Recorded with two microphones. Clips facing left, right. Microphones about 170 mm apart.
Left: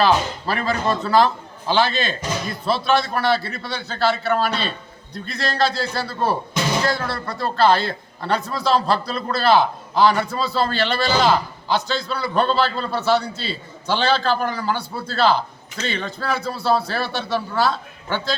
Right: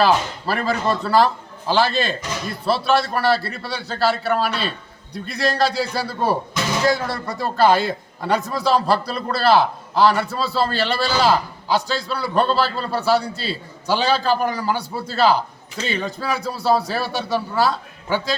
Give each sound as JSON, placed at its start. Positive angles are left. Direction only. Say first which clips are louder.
{"t": 0.0, "sound": "a man's voice", "louder": "even", "side_deg": -5}